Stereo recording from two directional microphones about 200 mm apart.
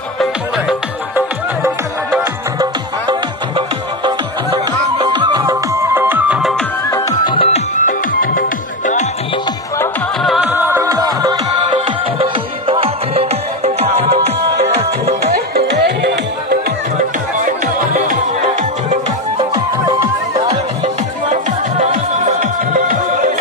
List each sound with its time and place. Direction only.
0.2 s music: 5° right (ahead or behind)
6.9 s music: 15° left (ahead or behind)
7.3 s music: 35° left (ahead or behind)
10.2 s music: 5° right (ahead or behind); by 15.3 s 30° right (ahead or behind)
15.5 s music: 55° right (ahead or behind)
17.4 s music: 40° right (ahead or behind)
20.4 s music: 35° right (ahead or behind)